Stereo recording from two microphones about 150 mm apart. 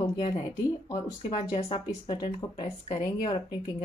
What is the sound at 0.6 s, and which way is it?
Speech, 25° left (ahead or behind).